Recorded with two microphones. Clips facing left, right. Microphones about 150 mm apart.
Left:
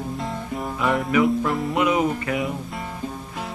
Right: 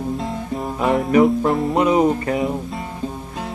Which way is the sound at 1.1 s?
40° right (ahead or behind).